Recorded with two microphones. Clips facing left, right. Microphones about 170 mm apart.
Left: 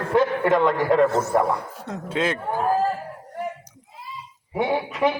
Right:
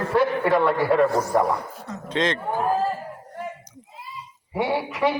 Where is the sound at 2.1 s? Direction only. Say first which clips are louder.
Right 1 dB; 10° left (ahead or behind).